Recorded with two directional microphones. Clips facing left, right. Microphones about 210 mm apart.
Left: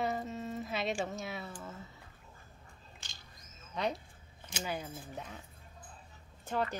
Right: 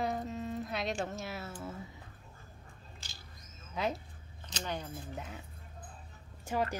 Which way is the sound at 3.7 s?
Centre (ahead or behind).